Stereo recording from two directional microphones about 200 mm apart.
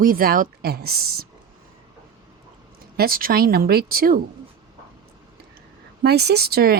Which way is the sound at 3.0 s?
45° right (ahead or behind).